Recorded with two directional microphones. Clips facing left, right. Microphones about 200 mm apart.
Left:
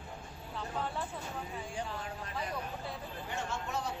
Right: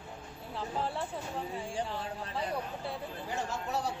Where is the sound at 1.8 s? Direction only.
30° right (ahead or behind).